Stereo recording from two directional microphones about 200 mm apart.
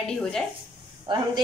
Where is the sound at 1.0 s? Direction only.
25° right (ahead or behind).